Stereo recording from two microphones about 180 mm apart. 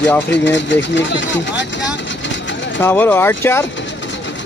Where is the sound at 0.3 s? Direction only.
80° left.